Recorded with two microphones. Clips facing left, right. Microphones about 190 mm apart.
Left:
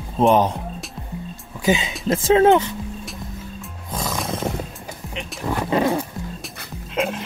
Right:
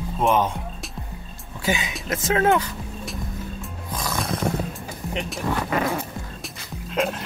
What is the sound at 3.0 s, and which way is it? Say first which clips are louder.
Music: right 2 dB; centre (ahead or behind).